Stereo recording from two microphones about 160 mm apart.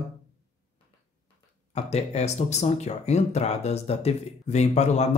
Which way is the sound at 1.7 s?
45° left (ahead or behind).